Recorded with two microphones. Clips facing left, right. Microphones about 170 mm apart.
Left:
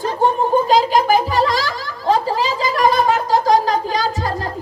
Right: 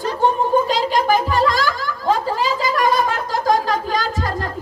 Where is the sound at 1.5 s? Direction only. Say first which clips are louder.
Right 2 dB; 50° right (ahead or behind).